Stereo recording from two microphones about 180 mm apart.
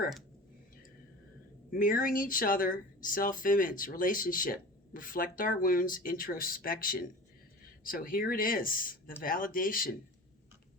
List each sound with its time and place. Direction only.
1.7 s speech: 50° left (ahead or behind)